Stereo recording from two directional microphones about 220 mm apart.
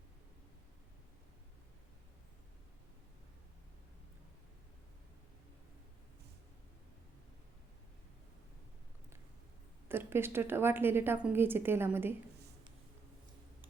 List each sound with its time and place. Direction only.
9.9 s a woman's voice: 10° right (ahead or behind)